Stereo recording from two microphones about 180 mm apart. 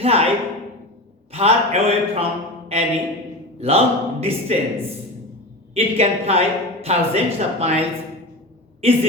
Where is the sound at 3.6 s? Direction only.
35° right (ahead or behind).